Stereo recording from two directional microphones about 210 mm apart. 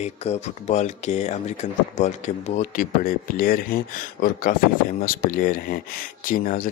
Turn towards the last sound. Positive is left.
turn(degrees=40)  # may be behind; listen again after turning